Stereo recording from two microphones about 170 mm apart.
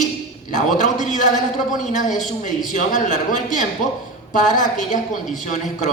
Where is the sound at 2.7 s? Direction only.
45° left (ahead or behind).